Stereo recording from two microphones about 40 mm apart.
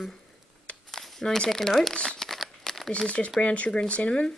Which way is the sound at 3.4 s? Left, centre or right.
Left.